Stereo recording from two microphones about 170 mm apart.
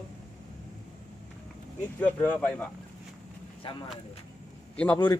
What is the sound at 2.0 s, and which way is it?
Speech, 10° left (ahead or behind).